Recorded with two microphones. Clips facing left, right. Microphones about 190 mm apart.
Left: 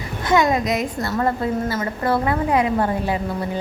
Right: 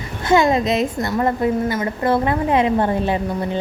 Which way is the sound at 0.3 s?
25° right (ahead or behind).